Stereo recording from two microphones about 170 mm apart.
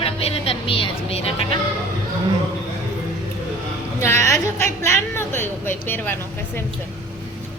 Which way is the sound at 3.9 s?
15° left (ahead or behind).